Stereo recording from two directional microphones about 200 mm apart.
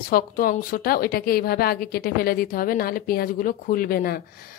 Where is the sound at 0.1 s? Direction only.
45° left (ahead or behind).